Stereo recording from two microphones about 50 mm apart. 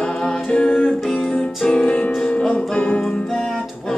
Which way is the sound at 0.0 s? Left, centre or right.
Centre.